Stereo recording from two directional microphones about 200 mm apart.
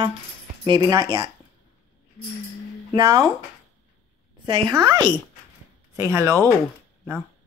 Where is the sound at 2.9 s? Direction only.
20° right (ahead or behind).